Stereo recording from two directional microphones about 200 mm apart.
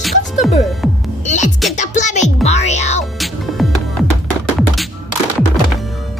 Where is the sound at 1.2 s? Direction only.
35° left (ahead or behind).